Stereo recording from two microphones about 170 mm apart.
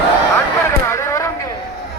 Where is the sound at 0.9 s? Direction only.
15° left (ahead or behind).